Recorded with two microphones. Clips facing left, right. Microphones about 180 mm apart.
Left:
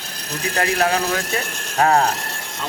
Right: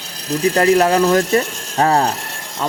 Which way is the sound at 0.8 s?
45° right (ahead or behind).